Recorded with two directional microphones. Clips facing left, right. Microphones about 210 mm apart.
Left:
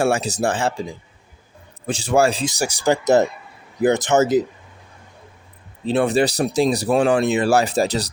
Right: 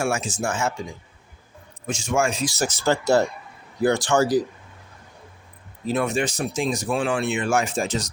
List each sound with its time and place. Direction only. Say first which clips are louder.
0.0 s speech: left 6 dB; 35° left (ahead or behind)
2.5 s speech: left 3 dB; 15° left (ahead or behind)
5.8 s speech: left 6 dB; 30° left (ahead or behind)